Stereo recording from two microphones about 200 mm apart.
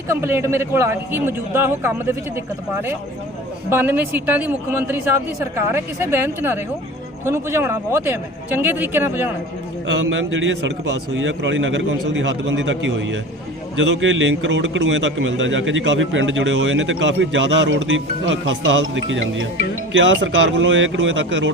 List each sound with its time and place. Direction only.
0.1 s speech: 10° right (ahead or behind)
3.7 s speech: 10° right (ahead or behind)
9.8 s a man's voice: 70° right (ahead or behind)